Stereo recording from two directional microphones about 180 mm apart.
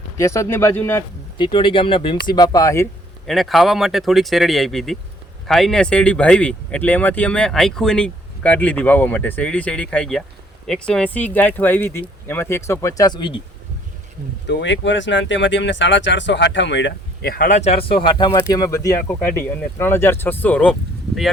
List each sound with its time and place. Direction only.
0.2 s speech: 15° left (ahead or behind)
1.4 s speech: 25° left (ahead or behind)
3.2 s speech: centre (ahead or behind); by 13.4 s 25° left (ahead or behind)
14.4 s speech: 80° left; by 17.6 s 55° left (ahead or behind)
17.6 s speech: 35° left (ahead or behind); by 20.7 s 5° left (ahead or behind)